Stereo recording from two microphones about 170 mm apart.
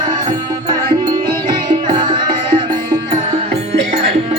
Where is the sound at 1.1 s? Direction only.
25° right (ahead or behind).